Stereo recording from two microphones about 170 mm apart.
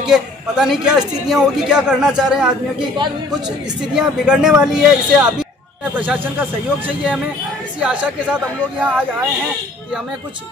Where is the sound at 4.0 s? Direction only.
5° right (ahead or behind).